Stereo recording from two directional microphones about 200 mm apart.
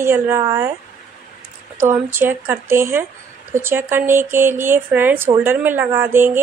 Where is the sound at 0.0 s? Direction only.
10° right (ahead or behind).